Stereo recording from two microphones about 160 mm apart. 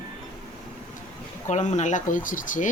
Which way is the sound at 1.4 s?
45° left (ahead or behind).